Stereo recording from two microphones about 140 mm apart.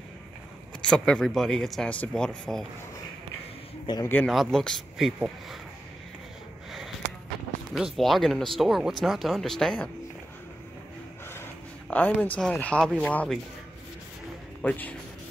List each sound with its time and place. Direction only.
0.8 s speech: 5° left (ahead or behind)
3.8 s a man's voice: 30° left (ahead or behind)
4.3 s speech: centre (ahead or behind)
7.7 s speech: centre (ahead or behind)
11.9 s speech: 10° left (ahead or behind)
14.6 s speech: 10° left (ahead or behind)